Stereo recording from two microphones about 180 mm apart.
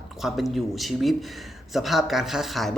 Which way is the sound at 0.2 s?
Centre (ahead or behind).